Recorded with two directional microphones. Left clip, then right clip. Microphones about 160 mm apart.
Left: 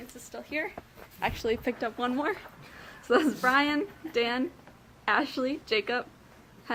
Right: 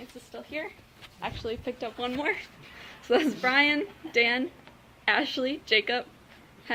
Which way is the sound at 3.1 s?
Centre (ahead or behind).